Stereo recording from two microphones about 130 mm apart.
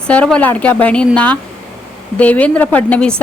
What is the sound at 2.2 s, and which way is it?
Speech, 10° left (ahead or behind).